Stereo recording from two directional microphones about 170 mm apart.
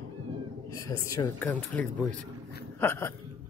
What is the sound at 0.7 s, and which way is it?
A man's voice, 20° left (ahead or behind).